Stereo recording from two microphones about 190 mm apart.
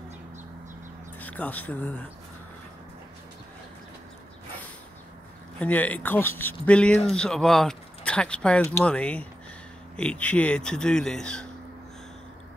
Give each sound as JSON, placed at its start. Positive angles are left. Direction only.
{"t": 1.2, "sound": "speech", "side_deg": 10}
{"t": 5.6, "sound": "speech", "side_deg": 10}